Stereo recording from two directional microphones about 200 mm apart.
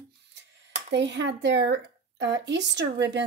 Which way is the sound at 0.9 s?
60° right (ahead or behind).